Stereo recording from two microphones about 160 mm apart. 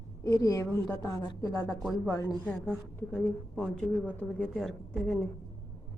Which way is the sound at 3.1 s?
5° left (ahead or behind).